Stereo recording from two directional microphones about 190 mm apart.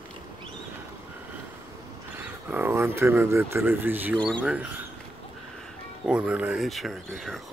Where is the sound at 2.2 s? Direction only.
10° right (ahead or behind).